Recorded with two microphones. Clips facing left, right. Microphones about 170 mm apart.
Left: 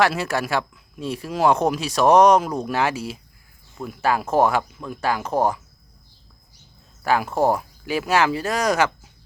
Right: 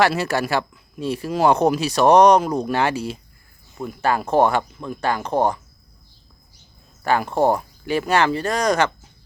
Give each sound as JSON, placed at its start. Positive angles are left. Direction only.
{"t": 0.0, "sound": "speech", "side_deg": 0}
{"t": 7.0, "sound": "speech", "side_deg": 5}